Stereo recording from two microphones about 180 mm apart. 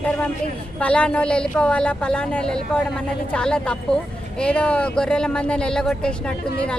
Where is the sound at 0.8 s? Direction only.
5° left (ahead or behind).